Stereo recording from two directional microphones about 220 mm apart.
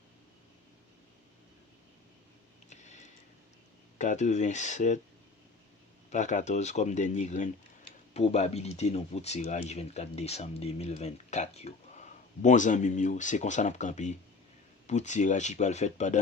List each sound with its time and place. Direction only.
2.6 s a sound: 30° left (ahead or behind)
3.9 s speech: 35° left (ahead or behind)
6.1 s speech: 35° left (ahead or behind)